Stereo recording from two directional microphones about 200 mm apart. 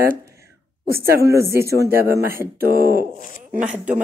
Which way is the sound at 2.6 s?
50° right (ahead or behind).